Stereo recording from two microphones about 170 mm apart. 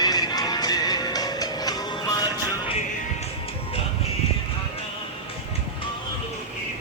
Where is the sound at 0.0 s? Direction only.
25° left (ahead or behind).